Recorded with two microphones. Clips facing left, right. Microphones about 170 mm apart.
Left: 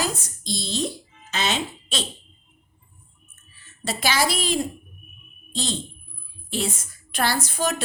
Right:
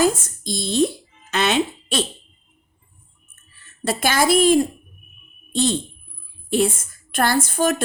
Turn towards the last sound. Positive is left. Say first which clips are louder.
# right 5 dB
turn(degrees=-50)  # may be behind; listen again after turning